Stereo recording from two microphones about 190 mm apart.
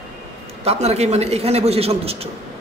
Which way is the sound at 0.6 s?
35° right (ahead or behind).